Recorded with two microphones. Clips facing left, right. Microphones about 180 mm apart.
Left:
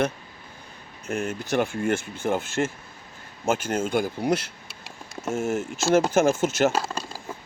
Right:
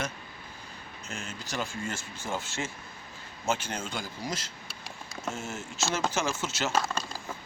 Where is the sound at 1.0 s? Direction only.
55° left (ahead or behind).